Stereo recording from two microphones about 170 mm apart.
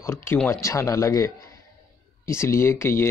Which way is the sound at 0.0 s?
15° left (ahead or behind).